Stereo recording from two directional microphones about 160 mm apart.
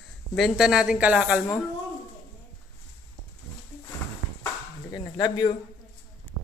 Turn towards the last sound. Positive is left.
turn(degrees=30)  # may be behind; listen again after turning